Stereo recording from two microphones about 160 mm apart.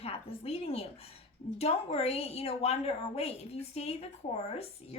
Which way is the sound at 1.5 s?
40° left (ahead or behind).